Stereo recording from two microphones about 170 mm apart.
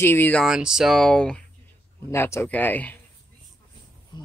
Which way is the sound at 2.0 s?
15° left (ahead or behind).